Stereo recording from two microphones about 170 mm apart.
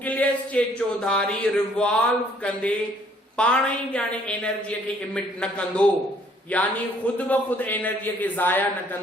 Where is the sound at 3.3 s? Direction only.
5° left (ahead or behind).